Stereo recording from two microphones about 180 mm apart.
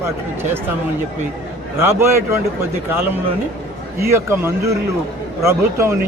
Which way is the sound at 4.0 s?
15° right (ahead or behind).